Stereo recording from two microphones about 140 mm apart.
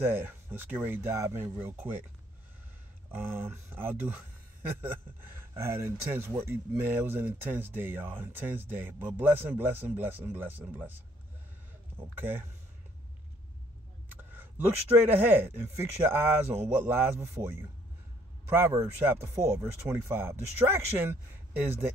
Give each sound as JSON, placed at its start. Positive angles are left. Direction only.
{"t": 0.0, "sound": "speech", "side_deg": -15}
{"t": 3.1, "sound": "speech", "side_deg": -15}
{"t": 5.4, "sound": "speech", "side_deg": -20}
{"t": 12.0, "sound": "speech", "side_deg": -15}
{"t": 15.0, "sound": "speech", "side_deg": -15}